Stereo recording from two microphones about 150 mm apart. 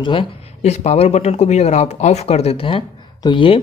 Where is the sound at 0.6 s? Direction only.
45° left (ahead or behind).